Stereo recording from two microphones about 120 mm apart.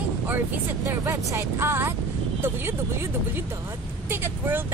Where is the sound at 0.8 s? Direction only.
20° right (ahead or behind).